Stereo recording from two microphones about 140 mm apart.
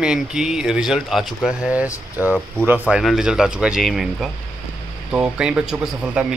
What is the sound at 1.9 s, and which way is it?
Speech, 20° left (ahead or behind).